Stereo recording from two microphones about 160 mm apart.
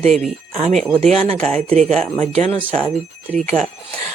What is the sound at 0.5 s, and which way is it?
Speech, 45° right (ahead or behind).